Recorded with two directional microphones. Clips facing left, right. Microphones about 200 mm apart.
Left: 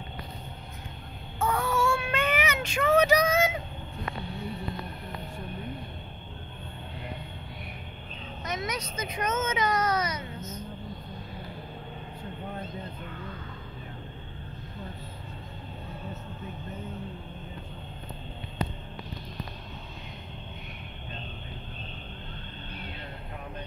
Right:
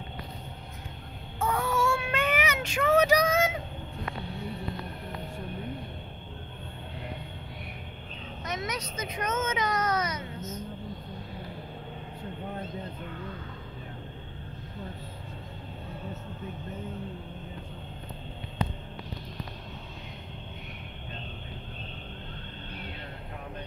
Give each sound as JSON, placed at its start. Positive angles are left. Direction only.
{"t": 1.4, "sound": "child singing", "side_deg": -5}
{"t": 8.5, "sound": "speech", "side_deg": 10}